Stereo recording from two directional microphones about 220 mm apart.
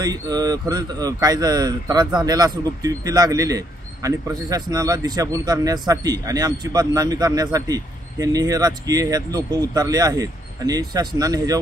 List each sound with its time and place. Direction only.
0.0 s speech: 15° right (ahead or behind)